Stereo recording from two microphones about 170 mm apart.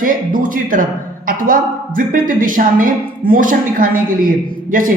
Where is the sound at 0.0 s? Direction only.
55° right (ahead or behind).